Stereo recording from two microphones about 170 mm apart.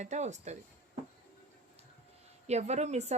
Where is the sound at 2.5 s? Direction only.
40° right (ahead or behind).